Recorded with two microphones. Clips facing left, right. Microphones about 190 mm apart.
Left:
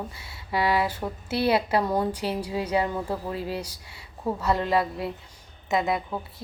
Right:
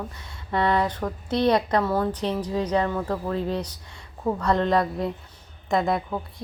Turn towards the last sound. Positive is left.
turn(degrees=0)  # may be behind; listen again after turning